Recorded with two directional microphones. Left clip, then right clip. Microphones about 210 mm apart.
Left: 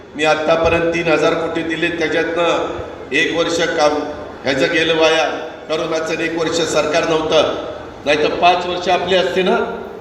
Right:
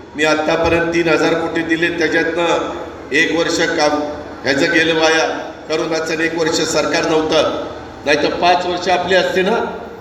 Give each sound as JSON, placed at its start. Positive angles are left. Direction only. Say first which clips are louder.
{"t": 0.2, "sound": "a man's voice", "louder": "left 1 dB", "side_deg": -30}